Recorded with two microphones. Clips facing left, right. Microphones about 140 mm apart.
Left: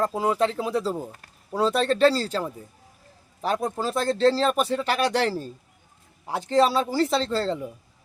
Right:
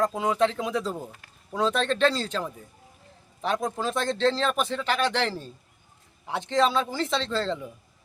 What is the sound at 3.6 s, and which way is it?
Speech, 5° left (ahead or behind).